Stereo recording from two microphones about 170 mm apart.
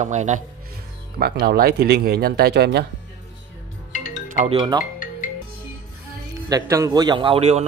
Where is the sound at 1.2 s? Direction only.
65° right (ahead or behind).